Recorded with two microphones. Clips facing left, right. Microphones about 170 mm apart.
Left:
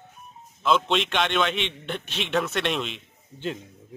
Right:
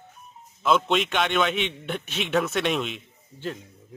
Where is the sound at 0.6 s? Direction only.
5° right (ahead or behind).